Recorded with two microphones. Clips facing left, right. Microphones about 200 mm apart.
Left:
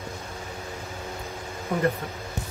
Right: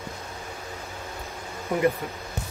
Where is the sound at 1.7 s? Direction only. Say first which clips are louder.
Right 2 dB; 10° right (ahead or behind).